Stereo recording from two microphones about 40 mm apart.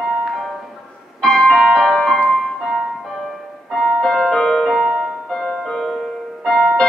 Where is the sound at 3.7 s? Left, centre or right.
Centre.